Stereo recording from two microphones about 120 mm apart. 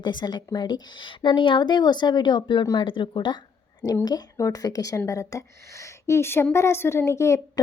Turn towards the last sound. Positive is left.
turn(degrees=25)  # may be behind; listen again after turning